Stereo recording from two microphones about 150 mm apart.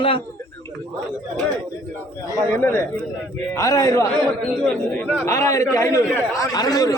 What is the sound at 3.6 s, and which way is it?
Speech, 20° left (ahead or behind).